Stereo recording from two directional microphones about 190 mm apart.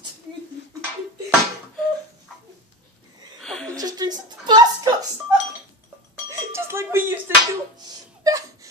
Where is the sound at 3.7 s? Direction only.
20° right (ahead or behind).